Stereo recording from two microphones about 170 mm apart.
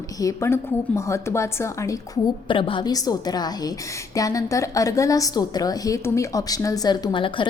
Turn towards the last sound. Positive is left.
turn(degrees=30)  # may be behind; listen again after turning